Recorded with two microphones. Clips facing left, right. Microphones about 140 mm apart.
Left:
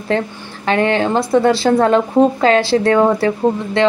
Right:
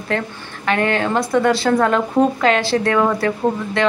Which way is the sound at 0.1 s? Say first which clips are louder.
Left 3 dB; 30° left (ahead or behind).